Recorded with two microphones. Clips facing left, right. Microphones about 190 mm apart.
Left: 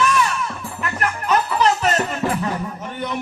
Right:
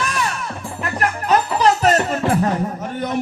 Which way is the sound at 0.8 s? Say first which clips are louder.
Right 2 dB; 35° right (ahead or behind).